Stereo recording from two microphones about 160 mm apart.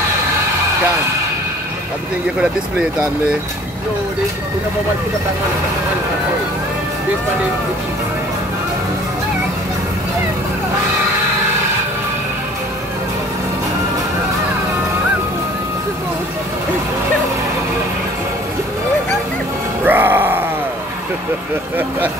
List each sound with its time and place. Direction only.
19.8 s music: 10° right (ahead or behind)